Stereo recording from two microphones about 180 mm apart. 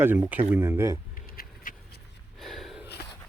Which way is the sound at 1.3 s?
50° left (ahead or behind).